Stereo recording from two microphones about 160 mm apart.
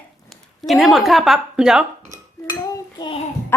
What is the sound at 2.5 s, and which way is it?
A child's voice, 25° left (ahead or behind).